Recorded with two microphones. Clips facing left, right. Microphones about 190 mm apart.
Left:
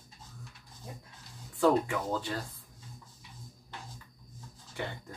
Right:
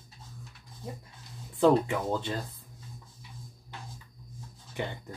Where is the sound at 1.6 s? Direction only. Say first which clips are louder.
Right 3 dB; 20° right (ahead or behind).